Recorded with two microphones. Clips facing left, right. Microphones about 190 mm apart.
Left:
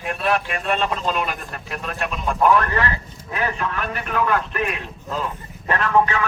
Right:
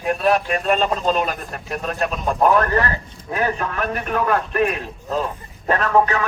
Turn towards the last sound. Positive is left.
turn(degrees=-40)  # may be behind; listen again after turning